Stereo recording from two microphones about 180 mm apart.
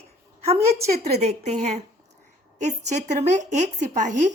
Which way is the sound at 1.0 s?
40° right (ahead or behind).